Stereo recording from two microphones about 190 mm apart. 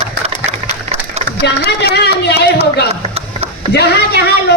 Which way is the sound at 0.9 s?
35° right (ahead or behind).